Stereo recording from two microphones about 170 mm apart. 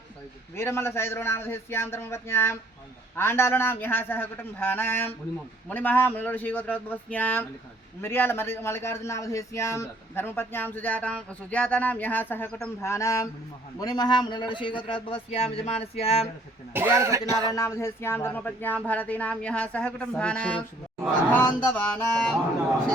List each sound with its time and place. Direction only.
0.5 s speech: 15° left (ahead or behind); by 16.3 s 35° left (ahead or behind)
16.7 s speech: 15° right (ahead or behind)
17.5 s speech: 15° left (ahead or behind)